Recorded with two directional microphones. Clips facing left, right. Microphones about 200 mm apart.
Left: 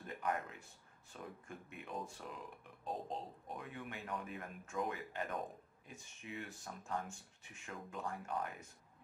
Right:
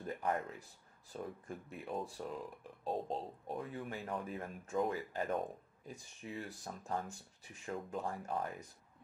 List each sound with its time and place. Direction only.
0.0 s speech: 35° right (ahead or behind)